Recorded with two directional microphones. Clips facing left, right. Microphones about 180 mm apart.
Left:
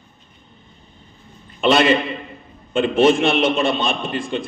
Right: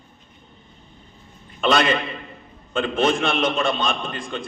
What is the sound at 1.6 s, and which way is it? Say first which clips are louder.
Speech: left 4 dB; 25° left (ahead or behind).